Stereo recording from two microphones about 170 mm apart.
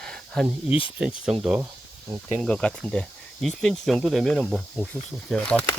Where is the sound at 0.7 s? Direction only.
30° left (ahead or behind).